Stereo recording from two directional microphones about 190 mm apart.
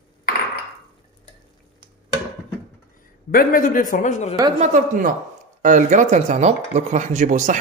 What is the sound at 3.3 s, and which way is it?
A man's voice, 45° left (ahead or behind).